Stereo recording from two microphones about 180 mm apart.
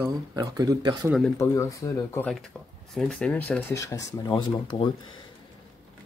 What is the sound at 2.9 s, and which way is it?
Speech, 5° left (ahead or behind).